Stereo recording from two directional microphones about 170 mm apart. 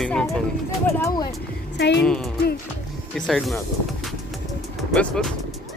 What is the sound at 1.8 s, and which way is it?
Speech, 80° left.